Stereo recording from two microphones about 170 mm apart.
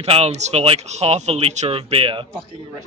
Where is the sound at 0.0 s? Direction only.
35° right (ahead or behind).